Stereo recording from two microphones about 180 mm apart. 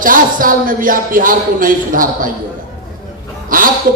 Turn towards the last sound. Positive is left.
turn(degrees=-50)  # may be behind; listen again after turning